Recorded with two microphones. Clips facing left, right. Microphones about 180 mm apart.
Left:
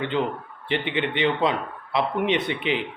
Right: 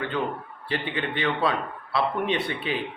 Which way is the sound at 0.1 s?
20° left (ahead or behind).